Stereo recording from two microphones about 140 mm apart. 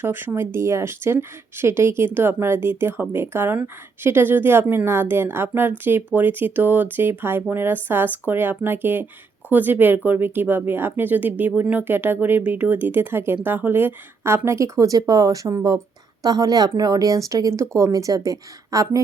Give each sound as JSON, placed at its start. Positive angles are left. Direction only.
{"t": 0.0, "sound": "a woman's voice", "side_deg": -15}